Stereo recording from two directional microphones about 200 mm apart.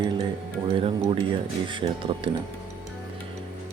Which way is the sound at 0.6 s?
25° right (ahead or behind).